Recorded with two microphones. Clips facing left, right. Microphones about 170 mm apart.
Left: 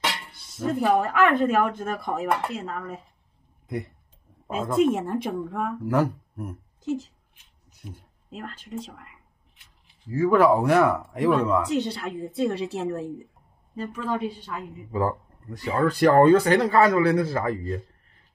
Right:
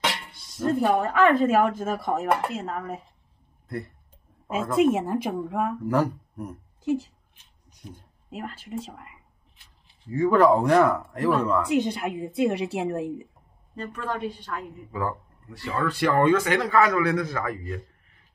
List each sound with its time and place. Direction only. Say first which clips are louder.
0.3 s speech: right 4 dB; centre (ahead or behind)
4.7 s speech: right 1 dB; 5° right (ahead or behind)
5.9 s speech: even; 5° left (ahead or behind)
6.8 s speech: right 3 dB; 10° right (ahead or behind)
7.7 s a sound: left 1 dB; 10° left (ahead or behind)
8.3 s a woman's voice: right 2 dB; 5° right (ahead or behind); by 11.3 s 10° left (ahead or behind)
11.6 s a woman's voice: right 2 dB; 10° right (ahead or behind)
13.7 s speech: left 3 dB; 5° left (ahead or behind)
14.9 s speech: left 5 dB; 35° left (ahead or behind)